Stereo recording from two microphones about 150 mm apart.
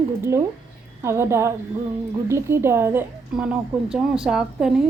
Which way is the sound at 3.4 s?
5° right (ahead or behind).